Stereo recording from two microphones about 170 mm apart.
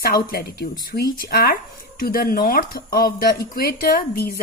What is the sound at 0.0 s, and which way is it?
Speech, 60° left (ahead or behind).